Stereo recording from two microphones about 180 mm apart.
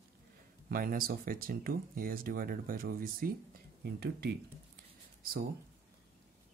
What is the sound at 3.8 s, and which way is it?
Speech, 65° right (ahead or behind).